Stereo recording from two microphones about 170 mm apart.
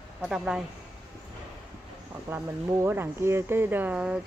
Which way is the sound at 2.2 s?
15° right (ahead or behind).